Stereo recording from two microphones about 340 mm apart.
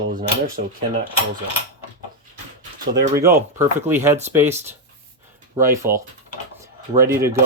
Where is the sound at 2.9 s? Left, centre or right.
Centre.